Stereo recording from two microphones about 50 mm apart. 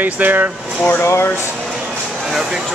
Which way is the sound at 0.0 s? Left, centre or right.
Right.